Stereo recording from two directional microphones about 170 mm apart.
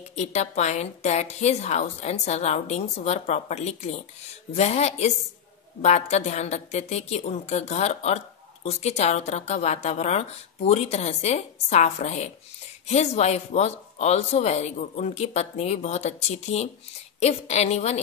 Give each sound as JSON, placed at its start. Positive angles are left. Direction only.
{"t": 0.1, "sound": "speech", "side_deg": 40}